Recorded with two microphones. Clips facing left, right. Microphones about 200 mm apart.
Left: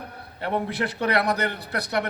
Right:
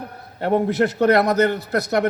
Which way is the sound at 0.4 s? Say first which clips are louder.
Right 8 dB; 45° right (ahead or behind).